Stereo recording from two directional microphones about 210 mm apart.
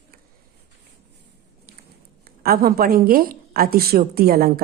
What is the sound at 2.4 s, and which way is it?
A woman's voice, 45° right (ahead or behind).